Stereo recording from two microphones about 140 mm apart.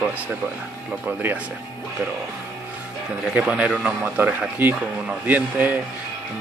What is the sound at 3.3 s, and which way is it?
Speech, 5° right (ahead or behind).